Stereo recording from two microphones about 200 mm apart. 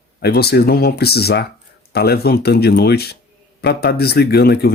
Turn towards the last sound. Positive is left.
turn(degrees=55)  # may be behind; listen again after turning